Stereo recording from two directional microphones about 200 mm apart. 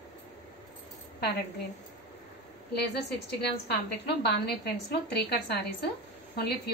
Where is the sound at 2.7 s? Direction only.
55° left (ahead or behind).